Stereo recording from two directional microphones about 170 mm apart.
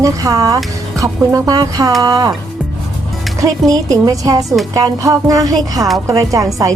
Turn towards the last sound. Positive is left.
turn(degrees=-20)  # may be behind; listen again after turning